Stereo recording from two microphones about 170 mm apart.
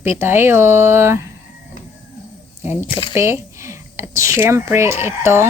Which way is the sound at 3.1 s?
15° right (ahead or behind).